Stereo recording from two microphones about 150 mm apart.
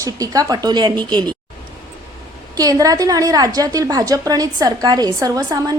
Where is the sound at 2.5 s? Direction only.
25° right (ahead or behind).